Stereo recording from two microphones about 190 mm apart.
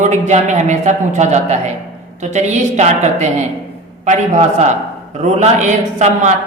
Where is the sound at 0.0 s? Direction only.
40° right (ahead or behind).